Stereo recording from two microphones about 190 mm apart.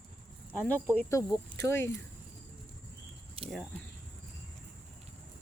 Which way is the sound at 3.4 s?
30° right (ahead or behind).